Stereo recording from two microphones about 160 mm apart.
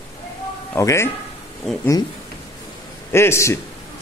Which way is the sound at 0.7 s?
15° left (ahead or behind).